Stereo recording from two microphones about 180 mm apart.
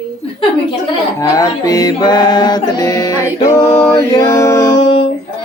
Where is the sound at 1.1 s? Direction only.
20° left (ahead or behind).